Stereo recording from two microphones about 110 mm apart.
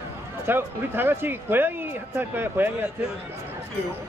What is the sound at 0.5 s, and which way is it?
Speech, 20° right (ahead or behind).